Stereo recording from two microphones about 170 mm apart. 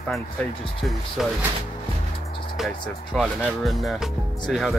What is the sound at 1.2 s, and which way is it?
Speech, centre (ahead or behind).